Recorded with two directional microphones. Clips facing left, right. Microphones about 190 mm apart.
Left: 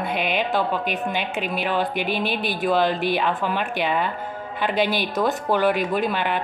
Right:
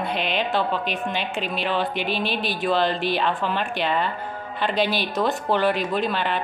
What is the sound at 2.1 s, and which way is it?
Speech, 50° left (ahead or behind).